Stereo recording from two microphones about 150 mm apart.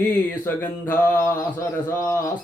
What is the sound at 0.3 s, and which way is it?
Mantra, 10° left (ahead or behind).